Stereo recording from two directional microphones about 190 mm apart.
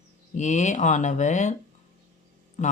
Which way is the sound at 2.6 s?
40° left (ahead or behind).